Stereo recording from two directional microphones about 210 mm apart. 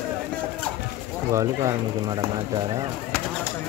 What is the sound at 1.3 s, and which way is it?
Speech, 15° right (ahead or behind).